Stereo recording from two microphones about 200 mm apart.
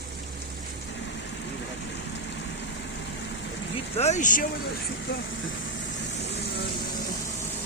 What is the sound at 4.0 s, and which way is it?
Speech, 35° left (ahead or behind).